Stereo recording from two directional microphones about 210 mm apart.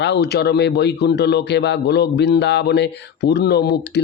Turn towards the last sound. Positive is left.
turn(degrees=50)  # may be behind; listen again after turning